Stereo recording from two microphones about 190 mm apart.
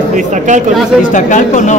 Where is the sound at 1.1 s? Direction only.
40° left (ahead or behind).